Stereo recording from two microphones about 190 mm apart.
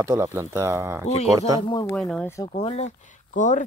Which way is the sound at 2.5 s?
35° left (ahead or behind).